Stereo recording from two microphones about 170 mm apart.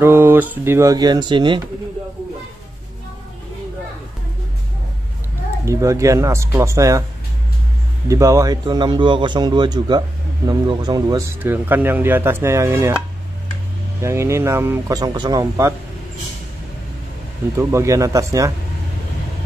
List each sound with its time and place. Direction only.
0.0 s speech: 15° right (ahead or behind)
5.7 s speech: 20° right (ahead or behind)
8.1 s a man's voice: 20° right (ahead or behind)
14.0 s speech: 15° right (ahead or behind)
17.6 s speech: 15° right (ahead or behind)